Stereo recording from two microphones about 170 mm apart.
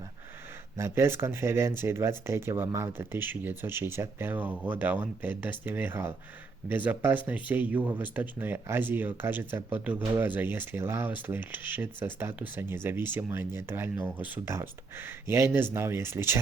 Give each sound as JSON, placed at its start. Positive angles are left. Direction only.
{"t": 0.8, "sound": "speech", "side_deg": -15}